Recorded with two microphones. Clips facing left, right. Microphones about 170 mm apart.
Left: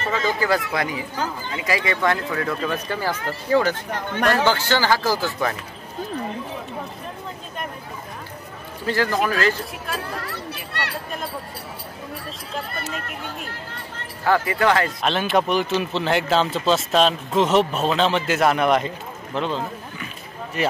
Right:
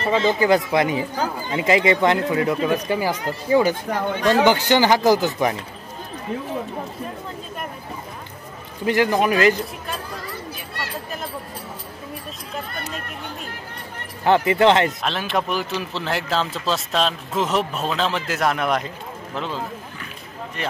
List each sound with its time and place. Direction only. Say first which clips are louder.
0.0 s speech: right 4 dB; 25° right (ahead or behind)
1.1 s speech: right 3 dB; 35° right (ahead or behind); by 5.6 s 20° right (ahead or behind)
8.8 s speech: right 3 dB; 15° right (ahead or behind)
10.1 s children playing: left 1 dB; 70° left (ahead or behind)
14.2 s speech: right 4 dB; 20° right (ahead or behind)
15.0 s speech: left 3 dB; centre (ahead or behind)
20.6 s speech: left 5 dB; 5° left (ahead or behind)